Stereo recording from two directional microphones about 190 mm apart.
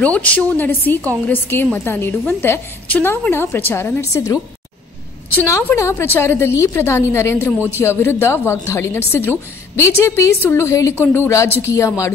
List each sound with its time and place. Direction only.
0.0 s a woman's voice: 5° left (ahead or behind)